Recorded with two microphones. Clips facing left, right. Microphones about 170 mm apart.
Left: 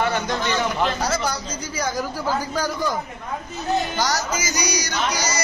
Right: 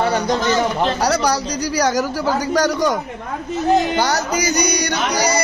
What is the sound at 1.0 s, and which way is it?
A man's voice, 75° right (ahead or behind).